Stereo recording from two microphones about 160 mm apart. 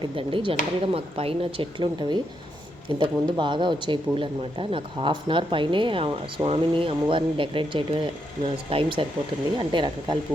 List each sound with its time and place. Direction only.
0.0 s speech: 35° right (ahead or behind)